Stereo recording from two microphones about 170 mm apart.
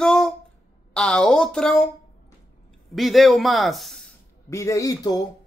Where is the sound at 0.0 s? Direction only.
5° left (ahead or behind).